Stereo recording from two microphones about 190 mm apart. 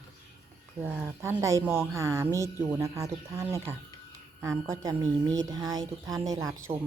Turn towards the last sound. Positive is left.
turn(degrees=-20)  # may be behind; listen again after turning